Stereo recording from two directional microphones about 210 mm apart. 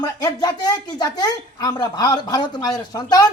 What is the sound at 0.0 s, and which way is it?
Speech, 20° left (ahead or behind).